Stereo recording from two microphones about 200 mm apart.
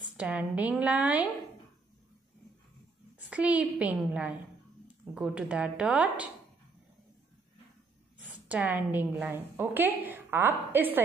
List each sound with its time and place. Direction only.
0.2 s a woman's voice: 10° right (ahead or behind)
3.3 s a woman's voice: 5° right (ahead or behind)
8.5 s a woman's voice: 10° right (ahead or behind)